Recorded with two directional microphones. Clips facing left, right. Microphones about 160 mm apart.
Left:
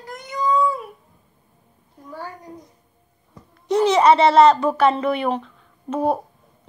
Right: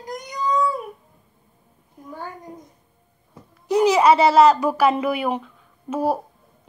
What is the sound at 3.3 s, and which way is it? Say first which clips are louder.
A child's voice: even; 5° right (ahead or behind).